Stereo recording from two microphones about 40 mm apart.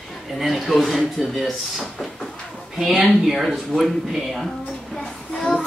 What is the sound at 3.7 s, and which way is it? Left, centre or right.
Speech, centre.